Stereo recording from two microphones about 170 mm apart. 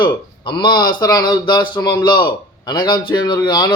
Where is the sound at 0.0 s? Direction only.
30° left (ahead or behind).